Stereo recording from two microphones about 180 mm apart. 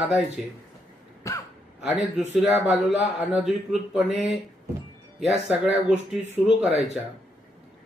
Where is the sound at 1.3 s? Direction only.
15° left (ahead or behind).